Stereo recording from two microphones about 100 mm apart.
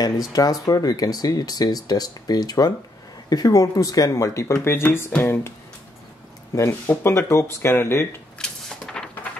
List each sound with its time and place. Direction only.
0.3 s speech: 40° left (ahead or behind)
6.5 s speech: 25° left (ahead or behind)
8.4 s cupboard open or close: 5° left (ahead or behind)